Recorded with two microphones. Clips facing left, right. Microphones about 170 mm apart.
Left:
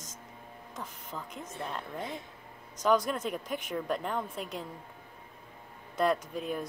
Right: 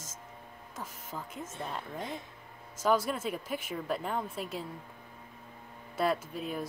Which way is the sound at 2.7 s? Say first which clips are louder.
Left 1 dB; 5° right (ahead or behind).